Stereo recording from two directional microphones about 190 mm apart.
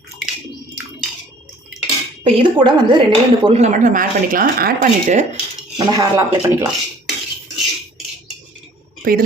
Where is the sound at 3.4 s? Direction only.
35° right (ahead or behind).